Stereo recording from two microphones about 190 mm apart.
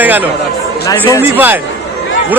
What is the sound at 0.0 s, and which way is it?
Chatter, 10° right (ahead or behind).